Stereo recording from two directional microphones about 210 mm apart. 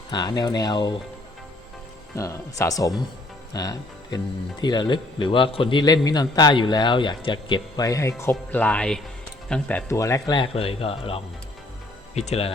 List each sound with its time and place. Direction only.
0.1 s a man's voice: 20° left (ahead or behind)
2.1 s a man's voice: 15° left (ahead or behind); by 12.5 s 30° left (ahead or behind)